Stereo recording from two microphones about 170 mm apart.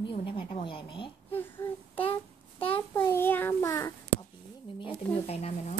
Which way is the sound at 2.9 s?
15° left (ahead or behind).